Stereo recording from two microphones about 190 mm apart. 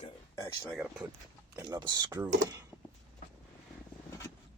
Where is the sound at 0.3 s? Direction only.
15° left (ahead or behind).